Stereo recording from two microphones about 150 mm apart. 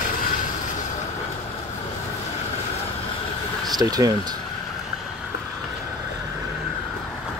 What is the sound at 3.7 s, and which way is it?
Speech, 25° right (ahead or behind).